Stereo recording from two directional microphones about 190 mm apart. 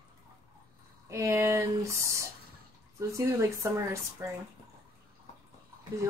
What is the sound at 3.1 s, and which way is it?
Speech, 15° right (ahead or behind).